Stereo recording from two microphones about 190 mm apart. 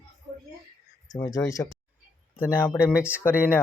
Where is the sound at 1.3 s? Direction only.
15° left (ahead or behind).